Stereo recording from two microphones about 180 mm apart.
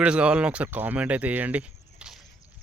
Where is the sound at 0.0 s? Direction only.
5° right (ahead or behind).